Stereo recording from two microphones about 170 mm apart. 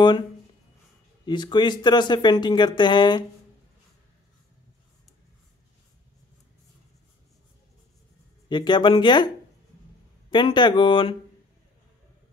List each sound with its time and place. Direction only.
1.2 s speech: 25° left (ahead or behind)
8.5 s speech: 25° left (ahead or behind)
10.3 s speech: 25° left (ahead or behind)